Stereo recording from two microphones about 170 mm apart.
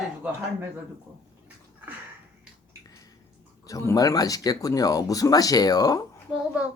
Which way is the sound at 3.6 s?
20° left (ahead or behind).